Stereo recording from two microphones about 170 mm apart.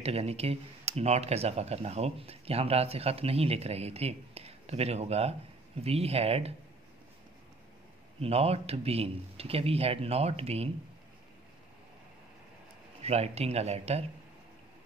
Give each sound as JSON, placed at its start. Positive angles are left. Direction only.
{"t": 0.0, "sound": "speech", "side_deg": -35}
{"t": 8.2, "sound": "speech", "side_deg": -35}
{"t": 13.0, "sound": "speech", "side_deg": -40}